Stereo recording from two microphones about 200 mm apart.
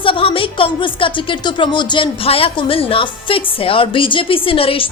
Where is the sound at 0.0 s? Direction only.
25° left (ahead or behind).